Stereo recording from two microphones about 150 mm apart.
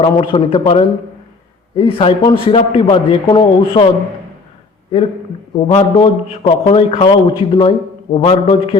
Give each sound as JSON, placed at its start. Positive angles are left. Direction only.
{"t": 0.0, "sound": "a man's voice", "side_deg": 30}
{"t": 5.5, "sound": "a man's voice", "side_deg": 35}